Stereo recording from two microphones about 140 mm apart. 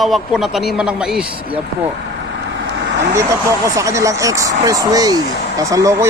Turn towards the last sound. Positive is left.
turn(degrees=-25)  # may be behind; listen again after turning